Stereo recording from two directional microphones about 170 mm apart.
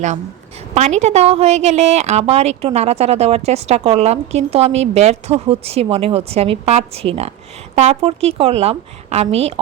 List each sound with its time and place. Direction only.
0.7 s a woman's voice: 40° right (ahead or behind)